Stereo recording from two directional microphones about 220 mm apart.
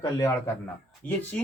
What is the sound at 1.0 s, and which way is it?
Speech, 5° left (ahead or behind).